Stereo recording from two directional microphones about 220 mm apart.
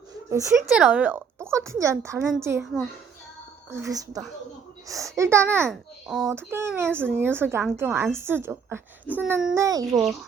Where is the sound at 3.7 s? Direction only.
15° right (ahead or behind).